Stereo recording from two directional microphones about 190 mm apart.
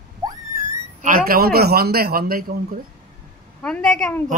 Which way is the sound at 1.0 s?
50° right (ahead or behind).